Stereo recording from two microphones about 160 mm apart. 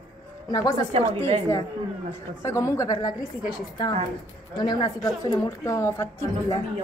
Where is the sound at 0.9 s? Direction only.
40° right (ahead or behind).